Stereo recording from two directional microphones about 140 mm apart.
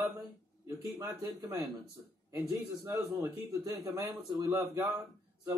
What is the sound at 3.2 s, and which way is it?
A man's voice, 25° right (ahead or behind).